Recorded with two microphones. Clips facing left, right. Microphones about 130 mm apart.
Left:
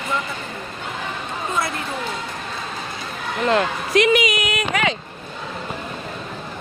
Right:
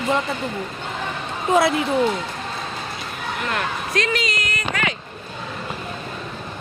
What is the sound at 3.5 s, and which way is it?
Speech, 20° left (ahead or behind).